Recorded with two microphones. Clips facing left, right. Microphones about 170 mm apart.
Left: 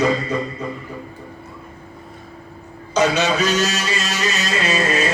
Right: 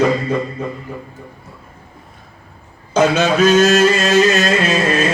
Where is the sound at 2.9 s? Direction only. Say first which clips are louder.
Right 4 dB; 55° right (ahead or behind).